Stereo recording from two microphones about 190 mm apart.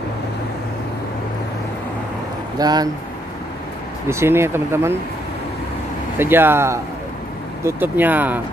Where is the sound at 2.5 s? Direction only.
20° right (ahead or behind).